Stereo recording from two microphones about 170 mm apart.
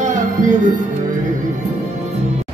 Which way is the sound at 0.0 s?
45° right (ahead or behind).